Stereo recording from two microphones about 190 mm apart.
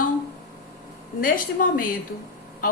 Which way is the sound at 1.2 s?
45° left (ahead or behind).